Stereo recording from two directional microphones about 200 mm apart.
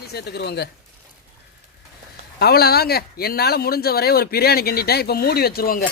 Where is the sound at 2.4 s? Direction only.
50° left (ahead or behind).